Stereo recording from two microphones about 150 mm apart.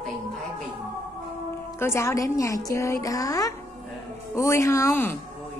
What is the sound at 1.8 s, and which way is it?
Music, 20° left (ahead or behind).